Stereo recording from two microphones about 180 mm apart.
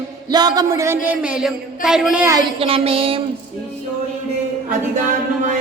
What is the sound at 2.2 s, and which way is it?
Speech, 20° right (ahead or behind).